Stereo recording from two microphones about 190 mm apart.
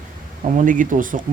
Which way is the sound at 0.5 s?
45° right (ahead or behind).